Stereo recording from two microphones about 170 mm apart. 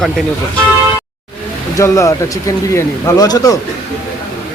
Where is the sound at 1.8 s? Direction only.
20° left (ahead or behind).